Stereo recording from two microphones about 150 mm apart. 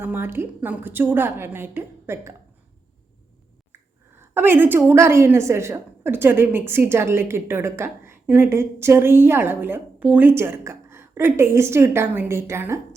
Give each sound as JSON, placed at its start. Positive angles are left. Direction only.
{"t": 0.0, "sound": "a woman's voice", "side_deg": -15}
{"t": 4.2, "sound": "a woman's voice", "side_deg": -15}